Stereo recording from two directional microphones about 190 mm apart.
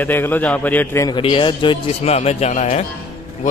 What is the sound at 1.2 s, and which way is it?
Speech, 25° left (ahead or behind).